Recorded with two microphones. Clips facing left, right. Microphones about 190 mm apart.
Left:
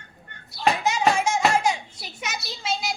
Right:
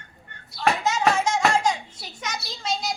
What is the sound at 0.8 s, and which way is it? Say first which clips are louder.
Speech: even; 10° left (ahead or behind).